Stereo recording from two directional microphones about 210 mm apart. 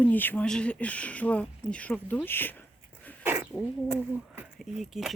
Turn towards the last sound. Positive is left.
turn(degrees=0)  # may be behind; listen again after turning